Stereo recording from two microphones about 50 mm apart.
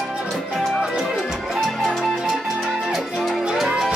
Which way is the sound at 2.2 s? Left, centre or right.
Centre.